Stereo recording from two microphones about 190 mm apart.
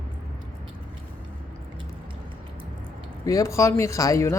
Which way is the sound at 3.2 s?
15° left (ahead or behind).